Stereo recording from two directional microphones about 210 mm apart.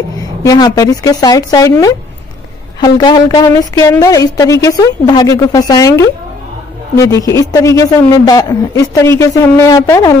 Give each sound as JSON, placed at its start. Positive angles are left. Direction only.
{"t": 0.4, "sound": "a woman's voice", "side_deg": 15}